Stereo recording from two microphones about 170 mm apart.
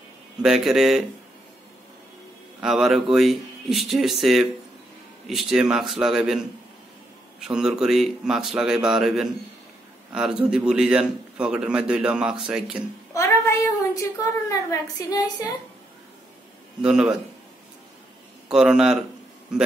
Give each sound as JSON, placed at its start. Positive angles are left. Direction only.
{"t": 0.4, "sound": "a man's voice", "side_deg": -5}
{"t": 2.6, "sound": "a man's voice", "side_deg": 0}
{"t": 13.1, "sound": "a sound", "side_deg": 15}
{"t": 14.5, "sound": "a woman's voice", "side_deg": 20}
{"t": 16.8, "sound": "a man's voice", "side_deg": -5}
{"t": 18.5, "sound": "a man's voice", "side_deg": -5}